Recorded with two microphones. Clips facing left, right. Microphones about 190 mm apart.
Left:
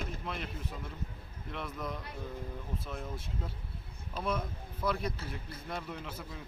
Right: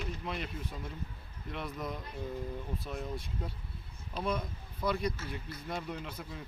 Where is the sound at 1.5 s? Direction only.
Centre (ahead or behind).